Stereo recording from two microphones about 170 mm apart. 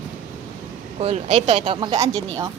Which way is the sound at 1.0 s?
35° right (ahead or behind).